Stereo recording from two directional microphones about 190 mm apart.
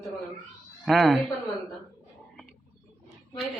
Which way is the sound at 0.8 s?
Centre (ahead or behind).